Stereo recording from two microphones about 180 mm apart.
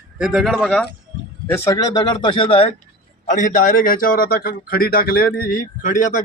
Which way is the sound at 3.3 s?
45° left (ahead or behind).